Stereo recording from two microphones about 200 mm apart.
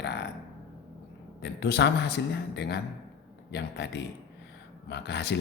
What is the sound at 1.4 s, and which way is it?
Speech, 55° left (ahead or behind).